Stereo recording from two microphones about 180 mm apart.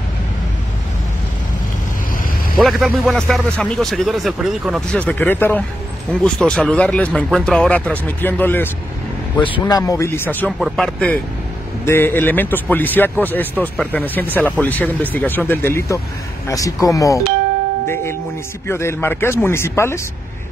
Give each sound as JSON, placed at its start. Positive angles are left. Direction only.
{"t": 2.5, "sound": "speech", "side_deg": 0}
{"t": 9.7, "sound": "a man's voice", "side_deg": 20}
{"t": 18.7, "sound": "a man's voice", "side_deg": 15}